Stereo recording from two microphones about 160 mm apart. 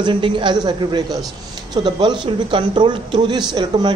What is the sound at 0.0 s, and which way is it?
A woman's voice, 30° right (ahead or behind).